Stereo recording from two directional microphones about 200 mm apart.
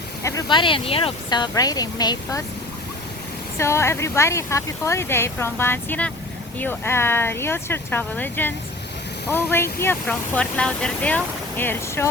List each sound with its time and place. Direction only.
0.2 s speech: 15° left (ahead or behind)
3.6 s speech: 15° left (ahead or behind)